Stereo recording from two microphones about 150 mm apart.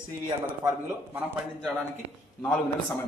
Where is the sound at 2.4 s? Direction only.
10° left (ahead or behind).